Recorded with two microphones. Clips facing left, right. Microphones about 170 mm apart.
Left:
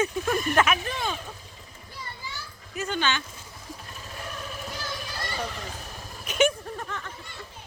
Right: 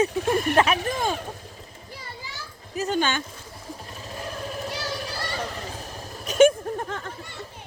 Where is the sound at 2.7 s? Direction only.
40° right (ahead or behind).